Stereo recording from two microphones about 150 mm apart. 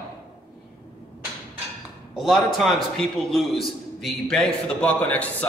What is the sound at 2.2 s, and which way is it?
A man's voice, centre (ahead or behind).